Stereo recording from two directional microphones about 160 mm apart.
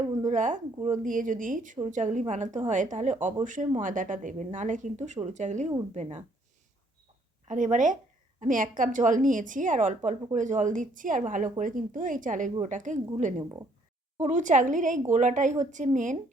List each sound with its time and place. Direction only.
0.3 s a woman's voice: 55° right (ahead or behind)
7.4 s a woman's voice: 50° right (ahead or behind)